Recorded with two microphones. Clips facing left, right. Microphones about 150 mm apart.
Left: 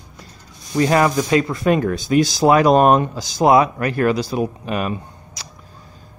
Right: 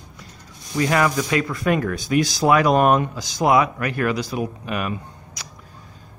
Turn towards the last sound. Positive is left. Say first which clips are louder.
# left 1 dB
turn(degrees=30)  # may be behind; listen again after turning